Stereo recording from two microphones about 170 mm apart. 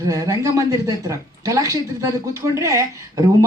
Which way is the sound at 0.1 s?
20° right (ahead or behind).